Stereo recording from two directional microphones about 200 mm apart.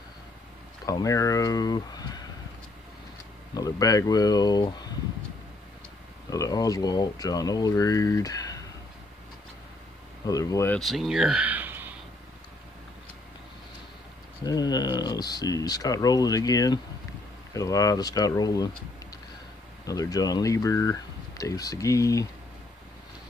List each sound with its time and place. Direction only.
0.8 s speech: 15° left (ahead or behind)
3.5 s speech: 15° left (ahead or behind)
6.3 s speech: 15° left (ahead or behind)
10.2 s speech: 15° left (ahead or behind)
10.8 s speech: centre (ahead or behind)
14.4 s speech: 20° left (ahead or behind)
19.9 s speech: 15° left (ahead or behind)